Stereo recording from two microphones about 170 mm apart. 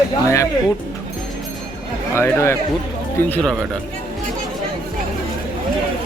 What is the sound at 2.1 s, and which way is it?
Speech, 15° left (ahead or behind).